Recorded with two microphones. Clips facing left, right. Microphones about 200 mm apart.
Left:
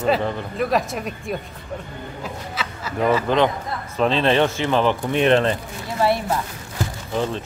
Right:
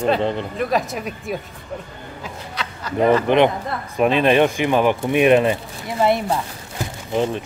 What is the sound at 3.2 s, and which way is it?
Speech, 20° right (ahead or behind).